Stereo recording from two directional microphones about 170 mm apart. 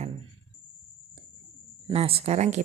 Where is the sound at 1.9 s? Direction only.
35° right (ahead or behind).